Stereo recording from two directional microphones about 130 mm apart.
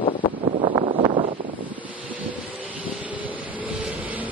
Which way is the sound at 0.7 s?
40° right (ahead or behind).